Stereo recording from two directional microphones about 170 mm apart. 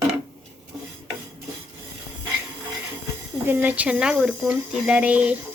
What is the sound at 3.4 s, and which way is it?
Speech, 10° right (ahead or behind).